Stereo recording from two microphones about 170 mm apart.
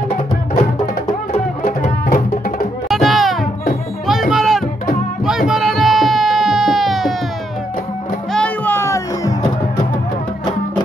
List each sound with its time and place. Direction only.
1.3 s music: 50° left (ahead or behind)
2.9 s music: centre (ahead or behind)
8.3 s music: 10° left (ahead or behind)